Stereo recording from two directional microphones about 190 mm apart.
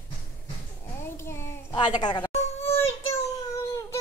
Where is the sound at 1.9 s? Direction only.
20° left (ahead or behind).